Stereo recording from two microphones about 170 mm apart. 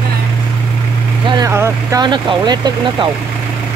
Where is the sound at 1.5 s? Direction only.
15° right (ahead or behind).